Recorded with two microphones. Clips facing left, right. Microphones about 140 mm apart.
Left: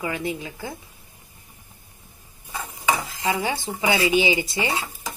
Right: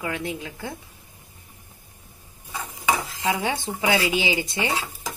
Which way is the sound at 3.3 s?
Centre (ahead or behind).